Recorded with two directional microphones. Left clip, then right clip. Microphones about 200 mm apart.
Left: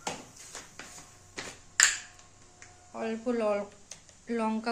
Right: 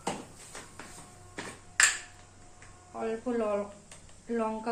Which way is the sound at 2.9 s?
60° left (ahead or behind).